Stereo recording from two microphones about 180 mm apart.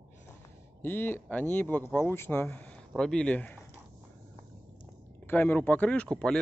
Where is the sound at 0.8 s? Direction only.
10° left (ahead or behind).